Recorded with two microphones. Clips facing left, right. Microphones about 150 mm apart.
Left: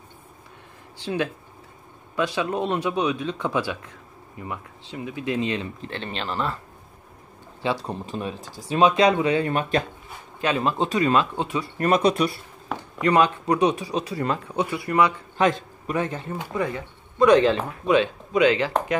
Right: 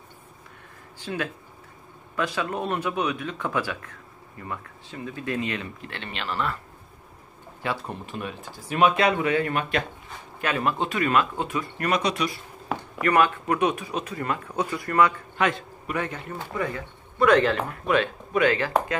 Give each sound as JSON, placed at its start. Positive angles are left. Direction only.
{"t": 1.0, "sound": "speech", "side_deg": 25}
{"t": 7.9, "sound": "speech", "side_deg": 35}
{"t": 12.7, "sound": "a sound", "side_deg": -5}
{"t": 13.0, "sound": "speech", "side_deg": 20}
{"t": 13.7, "sound": "speech", "side_deg": 35}
{"t": 14.5, "sound": "speech", "side_deg": 15}
{"t": 15.4, "sound": "a man's voice", "side_deg": 35}